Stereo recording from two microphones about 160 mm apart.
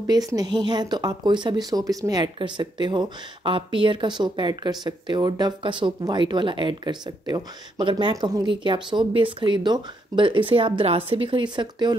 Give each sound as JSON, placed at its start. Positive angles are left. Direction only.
{"t": 0.3, "sound": "speech", "side_deg": -25}